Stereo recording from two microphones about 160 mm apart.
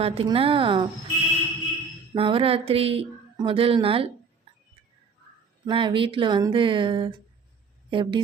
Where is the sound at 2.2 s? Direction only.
35° right (ahead or behind).